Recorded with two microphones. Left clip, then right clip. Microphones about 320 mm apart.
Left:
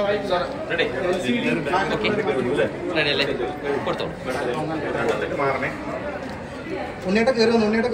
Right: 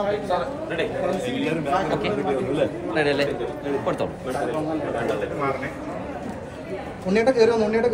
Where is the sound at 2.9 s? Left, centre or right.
Right.